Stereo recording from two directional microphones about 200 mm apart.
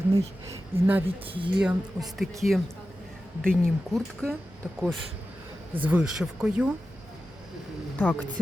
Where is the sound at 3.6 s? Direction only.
Centre (ahead or behind).